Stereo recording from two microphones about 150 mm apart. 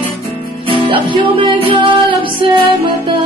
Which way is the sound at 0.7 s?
35° right (ahead or behind).